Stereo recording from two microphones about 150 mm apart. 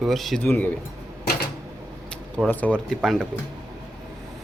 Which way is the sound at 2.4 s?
10° left (ahead or behind).